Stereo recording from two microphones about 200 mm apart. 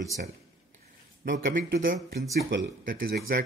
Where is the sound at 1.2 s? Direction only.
45° right (ahead or behind).